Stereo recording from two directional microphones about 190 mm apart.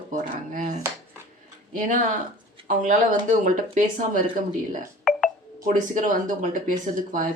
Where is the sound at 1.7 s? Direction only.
45° right (ahead or behind).